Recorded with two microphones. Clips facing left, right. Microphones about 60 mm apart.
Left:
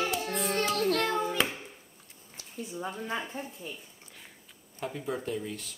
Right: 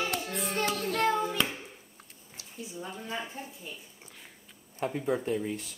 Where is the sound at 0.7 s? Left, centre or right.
Left.